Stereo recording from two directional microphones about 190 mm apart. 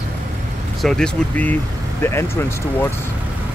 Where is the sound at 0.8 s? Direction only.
5° left (ahead or behind).